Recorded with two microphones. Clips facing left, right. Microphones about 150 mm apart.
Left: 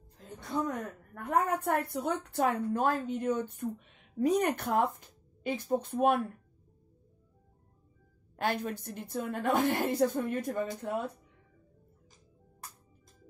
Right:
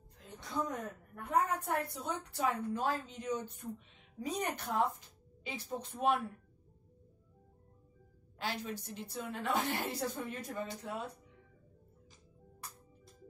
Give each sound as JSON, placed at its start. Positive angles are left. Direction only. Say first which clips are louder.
{"t": 0.2, "sound": "a woman's voice", "louder": "left 5 dB", "side_deg": 50}
{"t": 8.4, "sound": "a woman's voice", "louder": "left 7 dB", "side_deg": 55}